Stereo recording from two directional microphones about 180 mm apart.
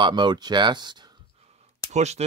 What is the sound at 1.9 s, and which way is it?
Speech, 40° right (ahead or behind).